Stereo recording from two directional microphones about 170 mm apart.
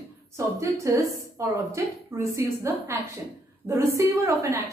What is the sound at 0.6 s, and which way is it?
A woman's voice, 20° right (ahead or behind).